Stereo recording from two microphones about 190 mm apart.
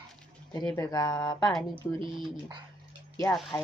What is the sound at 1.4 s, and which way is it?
Speech, centre (ahead or behind).